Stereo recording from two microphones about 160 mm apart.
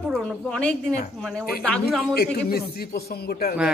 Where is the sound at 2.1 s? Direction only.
80° left.